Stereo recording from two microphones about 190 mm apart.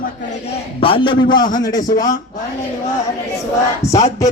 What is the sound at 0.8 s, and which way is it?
A man's voice, 30° left (ahead or behind).